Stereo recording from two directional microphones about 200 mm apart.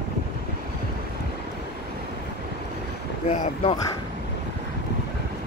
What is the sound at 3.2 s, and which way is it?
Speech, 30° left (ahead or behind).